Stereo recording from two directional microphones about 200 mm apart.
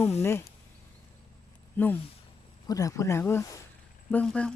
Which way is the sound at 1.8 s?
10° left (ahead or behind).